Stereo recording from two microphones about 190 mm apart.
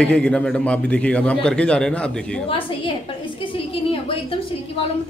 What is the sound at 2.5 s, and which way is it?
A woman's voice, 25° left (ahead or behind).